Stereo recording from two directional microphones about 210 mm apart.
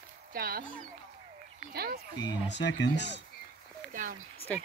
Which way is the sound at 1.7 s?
50° right (ahead or behind).